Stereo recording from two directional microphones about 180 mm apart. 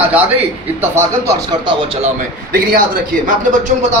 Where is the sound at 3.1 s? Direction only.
50° right (ahead or behind).